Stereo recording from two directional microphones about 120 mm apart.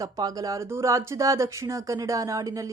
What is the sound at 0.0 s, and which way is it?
A woman's voice, 30° right (ahead or behind).